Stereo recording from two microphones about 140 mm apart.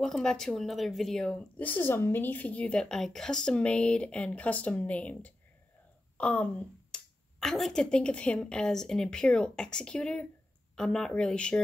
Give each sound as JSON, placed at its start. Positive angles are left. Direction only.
{"t": 0.0, "sound": "a woman's voice", "side_deg": 5}